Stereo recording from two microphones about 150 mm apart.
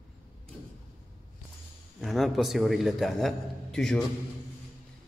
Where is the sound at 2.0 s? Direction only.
Centre (ahead or behind).